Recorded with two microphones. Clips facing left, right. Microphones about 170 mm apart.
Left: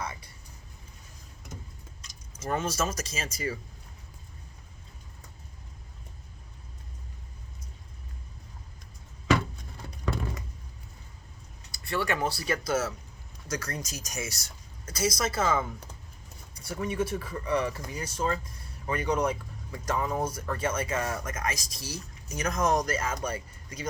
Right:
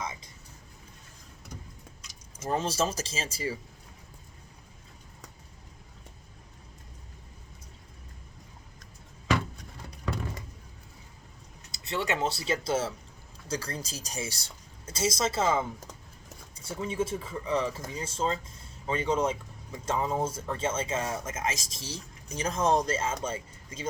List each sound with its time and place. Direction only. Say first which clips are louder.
2.5 s speech: right 1 dB; 30° right (ahead or behind)
11.7 s speech: left 1 dB; 20° right (ahead or behind)